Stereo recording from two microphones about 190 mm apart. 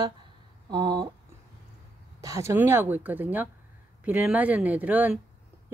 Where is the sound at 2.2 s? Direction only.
15° right (ahead or behind).